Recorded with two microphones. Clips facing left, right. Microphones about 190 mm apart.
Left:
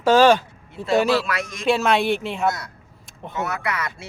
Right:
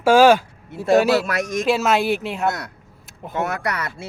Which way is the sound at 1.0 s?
45° right (ahead or behind).